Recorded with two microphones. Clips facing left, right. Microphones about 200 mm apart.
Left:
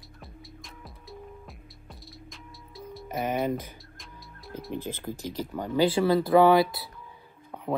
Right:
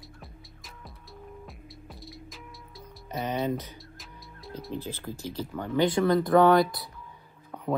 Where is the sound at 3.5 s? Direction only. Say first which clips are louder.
Even; 50° left (ahead or behind).